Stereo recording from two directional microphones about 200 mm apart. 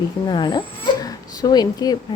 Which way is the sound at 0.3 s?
20° left (ahead or behind).